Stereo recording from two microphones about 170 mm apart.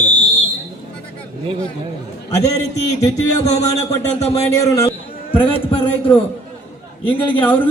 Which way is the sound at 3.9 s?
20° left (ahead or behind).